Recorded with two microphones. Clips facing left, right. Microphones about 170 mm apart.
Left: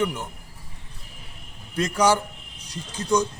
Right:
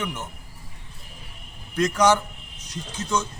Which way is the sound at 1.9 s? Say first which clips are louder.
Even; 10° left (ahead or behind).